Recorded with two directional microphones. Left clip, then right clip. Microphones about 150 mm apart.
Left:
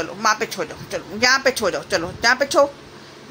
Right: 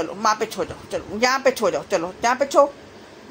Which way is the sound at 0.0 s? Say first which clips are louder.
Left 1 dB; 15° right (ahead or behind).